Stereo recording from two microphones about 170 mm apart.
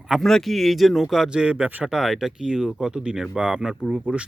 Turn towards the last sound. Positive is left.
turn(degrees=-5)  # may be behind; listen again after turning